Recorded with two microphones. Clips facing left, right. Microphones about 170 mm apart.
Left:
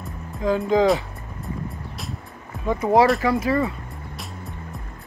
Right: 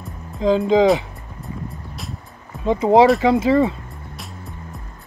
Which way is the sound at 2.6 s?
25° right (ahead or behind).